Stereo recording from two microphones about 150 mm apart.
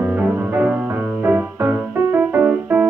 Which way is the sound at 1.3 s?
10° right (ahead or behind).